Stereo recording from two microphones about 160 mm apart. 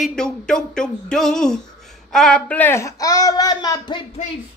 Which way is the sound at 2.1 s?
5° left (ahead or behind).